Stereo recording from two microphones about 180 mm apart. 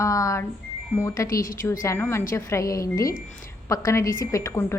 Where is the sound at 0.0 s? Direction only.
15° left (ahead or behind).